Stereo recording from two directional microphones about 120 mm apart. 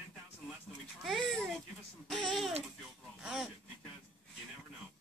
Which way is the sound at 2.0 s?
Centre (ahead or behind).